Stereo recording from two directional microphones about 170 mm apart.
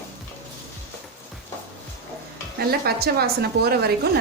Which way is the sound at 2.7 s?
65° right (ahead or behind).